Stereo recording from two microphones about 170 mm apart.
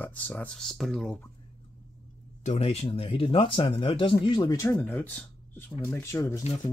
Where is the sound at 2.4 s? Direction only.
40° left (ahead or behind).